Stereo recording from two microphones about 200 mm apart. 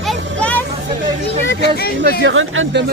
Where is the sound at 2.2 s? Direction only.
75° right (ahead or behind).